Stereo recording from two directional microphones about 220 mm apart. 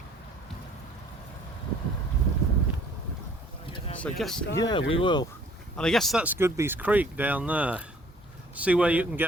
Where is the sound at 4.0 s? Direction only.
5° left (ahead or behind).